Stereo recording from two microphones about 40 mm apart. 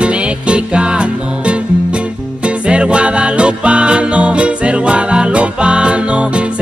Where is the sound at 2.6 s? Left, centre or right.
Right.